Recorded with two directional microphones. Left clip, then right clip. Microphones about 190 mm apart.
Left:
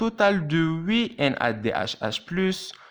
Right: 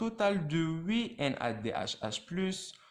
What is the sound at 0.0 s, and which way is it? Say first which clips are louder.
A man's voice: left 9 dB; 35° left (ahead or behind).